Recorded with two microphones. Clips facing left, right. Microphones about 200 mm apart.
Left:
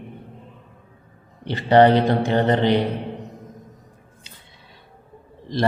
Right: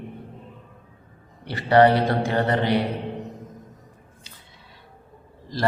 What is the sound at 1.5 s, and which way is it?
A man's voice, 25° left (ahead or behind).